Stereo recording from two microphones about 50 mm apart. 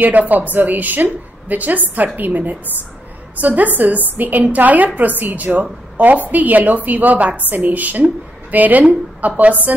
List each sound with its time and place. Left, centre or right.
0.0 s a woman's voice: right